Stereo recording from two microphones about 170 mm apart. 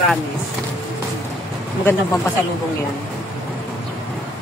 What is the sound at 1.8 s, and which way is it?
Speech, 15° left (ahead or behind).